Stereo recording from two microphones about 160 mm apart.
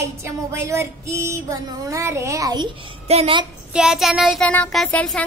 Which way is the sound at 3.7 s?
5° right (ahead or behind).